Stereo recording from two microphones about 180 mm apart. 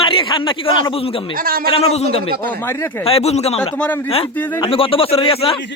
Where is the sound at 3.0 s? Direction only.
35° left (ahead or behind).